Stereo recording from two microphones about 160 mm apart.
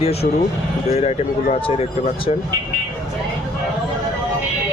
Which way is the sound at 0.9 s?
45° left (ahead or behind).